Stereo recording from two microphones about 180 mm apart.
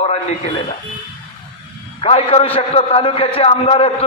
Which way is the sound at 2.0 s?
35° left (ahead or behind).